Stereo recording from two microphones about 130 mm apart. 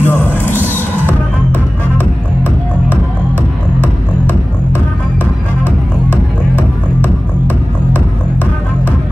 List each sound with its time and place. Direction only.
0.0 s music: 15° left (ahead or behind)
0.6 s music: 15° right (ahead or behind)